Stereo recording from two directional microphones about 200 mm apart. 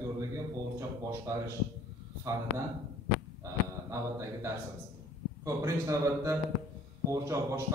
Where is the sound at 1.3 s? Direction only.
15° right (ahead or behind).